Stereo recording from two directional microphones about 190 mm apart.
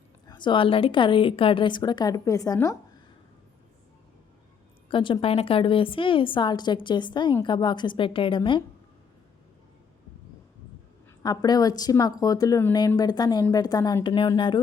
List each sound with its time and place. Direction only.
0.3 s a woman's voice: 25° left (ahead or behind)
4.9 s a woman's voice: 25° left (ahead or behind)
11.2 s a woman's voice: 20° left (ahead or behind)